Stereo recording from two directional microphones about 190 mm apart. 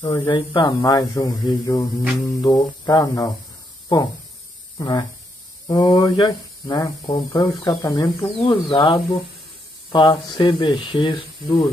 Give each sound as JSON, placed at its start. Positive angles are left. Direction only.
{"t": 0.0, "sound": "speech", "side_deg": 25}
{"t": 4.7, "sound": "speech", "side_deg": 20}